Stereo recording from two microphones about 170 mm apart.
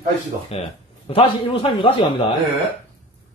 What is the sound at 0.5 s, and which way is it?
A man's voice, 35° left (ahead or behind).